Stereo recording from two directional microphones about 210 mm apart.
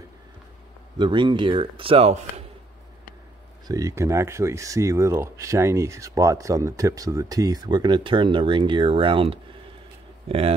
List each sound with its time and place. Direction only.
0.9 s a man's voice: 20° right (ahead or behind)
3.6 s speech: 15° right (ahead or behind)